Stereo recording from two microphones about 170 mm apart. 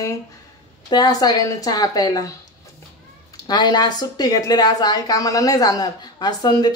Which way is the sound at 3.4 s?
25° left (ahead or behind).